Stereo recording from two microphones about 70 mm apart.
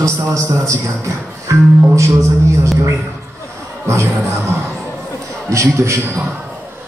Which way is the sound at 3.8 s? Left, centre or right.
Right.